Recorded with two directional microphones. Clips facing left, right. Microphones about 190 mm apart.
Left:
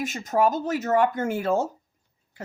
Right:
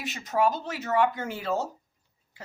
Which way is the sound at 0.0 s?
45° left (ahead or behind).